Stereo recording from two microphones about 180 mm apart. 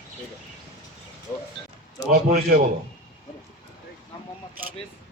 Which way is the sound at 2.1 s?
55° right (ahead or behind).